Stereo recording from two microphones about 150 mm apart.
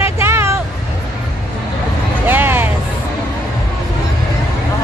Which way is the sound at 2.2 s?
15° right (ahead or behind).